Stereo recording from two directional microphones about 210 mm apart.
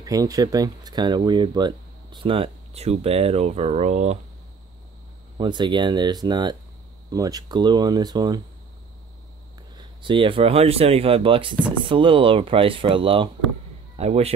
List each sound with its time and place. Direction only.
0.0 s speech: 15° right (ahead or behind)
5.4 s speech: 20° right (ahead or behind)
9.8 s speech: 25° right (ahead or behind)